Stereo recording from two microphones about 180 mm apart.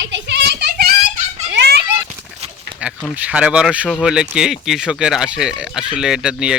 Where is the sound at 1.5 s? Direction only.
70° right (ahead or behind).